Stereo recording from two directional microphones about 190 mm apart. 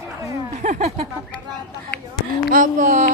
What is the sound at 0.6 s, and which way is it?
Speech, 40° right (ahead or behind).